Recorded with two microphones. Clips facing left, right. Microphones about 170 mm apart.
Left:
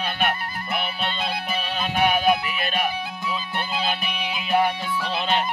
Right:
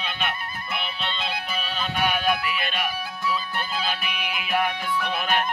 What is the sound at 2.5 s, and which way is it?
Music, 40° left (ahead or behind).